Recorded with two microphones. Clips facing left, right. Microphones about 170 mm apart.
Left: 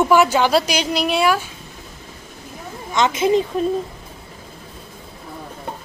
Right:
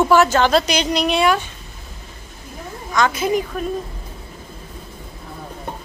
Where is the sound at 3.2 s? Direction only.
25° left (ahead or behind).